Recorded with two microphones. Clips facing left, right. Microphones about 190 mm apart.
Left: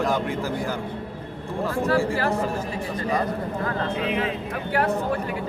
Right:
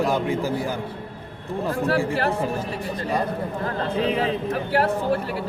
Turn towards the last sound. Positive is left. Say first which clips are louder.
# right 3 dB
turn(degrees=-35)  # may be behind; listen again after turning